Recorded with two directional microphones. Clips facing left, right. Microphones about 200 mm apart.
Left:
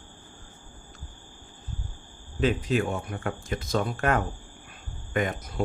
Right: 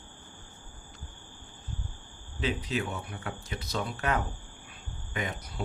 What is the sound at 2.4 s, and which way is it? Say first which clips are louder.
Speech: left 7 dB; 50° left (ahead or behind).